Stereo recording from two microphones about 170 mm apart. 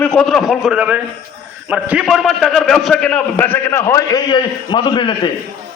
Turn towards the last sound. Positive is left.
turn(degrees=30)  # may be behind; listen again after turning